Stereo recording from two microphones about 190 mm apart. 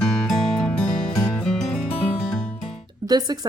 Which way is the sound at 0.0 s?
5° left (ahead or behind).